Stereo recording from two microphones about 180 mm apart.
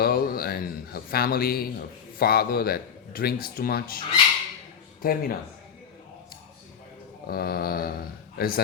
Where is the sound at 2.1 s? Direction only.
55° left (ahead or behind).